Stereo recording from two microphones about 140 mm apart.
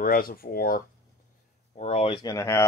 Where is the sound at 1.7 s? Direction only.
50° left (ahead or behind); by 2.6 s 20° left (ahead or behind).